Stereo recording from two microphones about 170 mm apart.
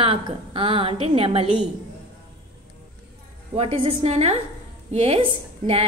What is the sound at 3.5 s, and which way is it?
A woman's voice, 35° right (ahead or behind).